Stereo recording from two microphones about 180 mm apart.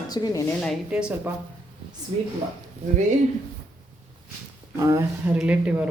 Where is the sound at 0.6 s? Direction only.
Centre (ahead or behind).